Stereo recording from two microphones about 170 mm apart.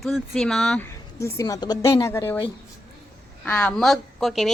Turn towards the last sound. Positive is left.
turn(degrees=0)  # may be behind; listen again after turning